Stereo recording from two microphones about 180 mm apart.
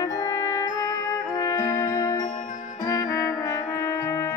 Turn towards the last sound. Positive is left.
turn(degrees=15)  # may be behind; listen again after turning